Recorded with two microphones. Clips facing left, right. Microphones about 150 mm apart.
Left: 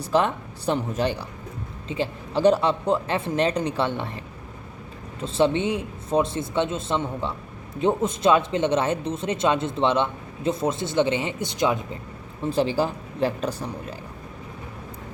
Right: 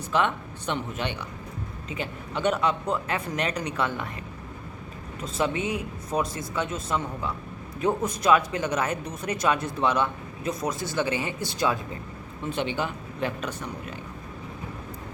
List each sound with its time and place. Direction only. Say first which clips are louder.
0.0 s speech: left 3 dB; 35° left (ahead or behind)
5.2 s speech: left 6 dB; 30° left (ahead or behind)
12.4 s speech: left 6 dB; 35° left (ahead or behind)